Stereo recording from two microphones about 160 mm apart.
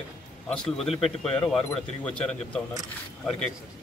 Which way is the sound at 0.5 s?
5° left (ahead or behind).